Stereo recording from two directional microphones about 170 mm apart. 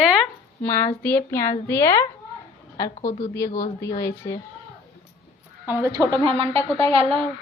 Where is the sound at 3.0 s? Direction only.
45° left (ahead or behind).